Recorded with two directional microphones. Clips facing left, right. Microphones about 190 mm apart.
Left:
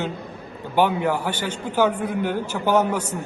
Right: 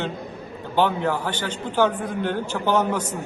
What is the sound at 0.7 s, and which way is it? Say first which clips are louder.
A man's voice: left 1 dB; 10° left (ahead or behind).